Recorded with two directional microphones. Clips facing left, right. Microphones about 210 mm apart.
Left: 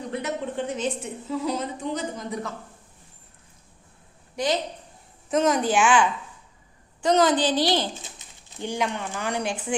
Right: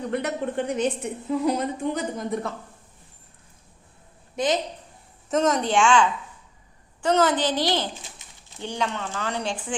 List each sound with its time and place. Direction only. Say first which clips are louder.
0.1 s a woman's voice: right 2 dB; 60° right (ahead or behind)
4.4 s a woman's voice: right 1 dB; 20° right (ahead or behind)
5.3 s a woman's voice: even; 5° left (ahead or behind)
7.0 s speech: left 1 dB; 15° left (ahead or behind)